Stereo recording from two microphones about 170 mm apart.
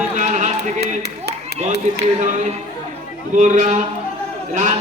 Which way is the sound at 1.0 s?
75° right (ahead or behind).